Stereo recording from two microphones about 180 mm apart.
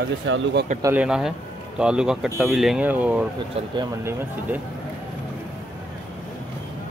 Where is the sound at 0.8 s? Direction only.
5° right (ahead or behind).